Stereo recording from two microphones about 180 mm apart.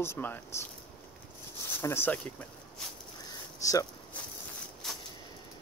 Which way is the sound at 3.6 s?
20° left (ahead or behind).